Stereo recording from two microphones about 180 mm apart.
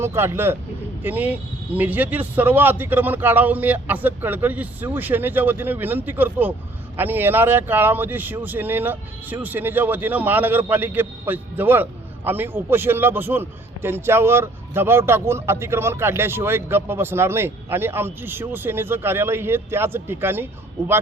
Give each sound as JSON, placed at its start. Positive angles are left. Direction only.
{"t": 0.0, "sound": "speech", "side_deg": -15}